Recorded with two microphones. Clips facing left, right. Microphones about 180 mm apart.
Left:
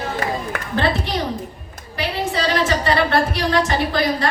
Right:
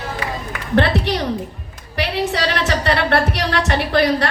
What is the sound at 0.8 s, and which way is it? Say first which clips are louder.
A woman's voice: right 3 dB; 70° right (ahead or behind).